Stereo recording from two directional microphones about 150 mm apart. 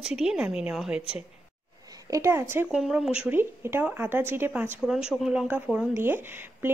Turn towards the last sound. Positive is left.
turn(degrees=-15)  # may be behind; listen again after turning